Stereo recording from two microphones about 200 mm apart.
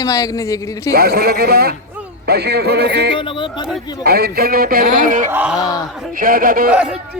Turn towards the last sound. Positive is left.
turn(degrees=-5)  # may be behind; listen again after turning